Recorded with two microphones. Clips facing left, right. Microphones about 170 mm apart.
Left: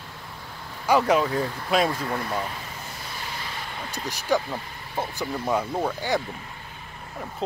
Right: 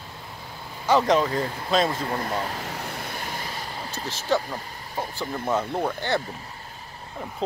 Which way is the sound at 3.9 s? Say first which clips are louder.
Even; 15° left (ahead or behind).